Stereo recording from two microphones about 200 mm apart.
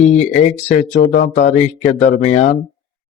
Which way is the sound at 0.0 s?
35° left (ahead or behind).